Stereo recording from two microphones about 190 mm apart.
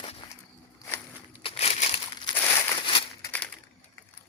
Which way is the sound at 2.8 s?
25° left (ahead or behind).